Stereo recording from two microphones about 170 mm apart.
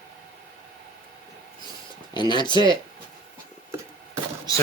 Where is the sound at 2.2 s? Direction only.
25° left (ahead or behind).